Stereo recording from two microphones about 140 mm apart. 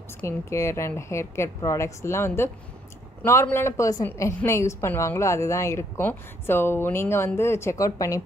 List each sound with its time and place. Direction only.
0.2 s a woman's voice: 20° left (ahead or behind)